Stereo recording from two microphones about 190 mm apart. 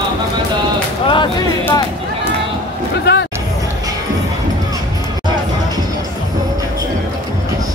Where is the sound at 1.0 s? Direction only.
25° left (ahead or behind).